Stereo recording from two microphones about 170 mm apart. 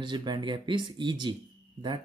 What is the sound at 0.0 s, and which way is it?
Speech, 25° right (ahead or behind).